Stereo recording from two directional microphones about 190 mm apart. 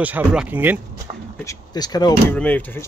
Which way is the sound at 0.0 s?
5° right (ahead or behind).